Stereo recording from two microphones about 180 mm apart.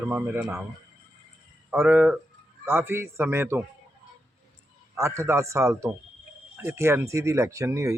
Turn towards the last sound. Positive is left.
turn(degrees=-15)  # may be behind; listen again after turning